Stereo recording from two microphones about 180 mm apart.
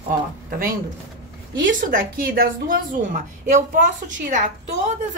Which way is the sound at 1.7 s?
50° right (ahead or behind).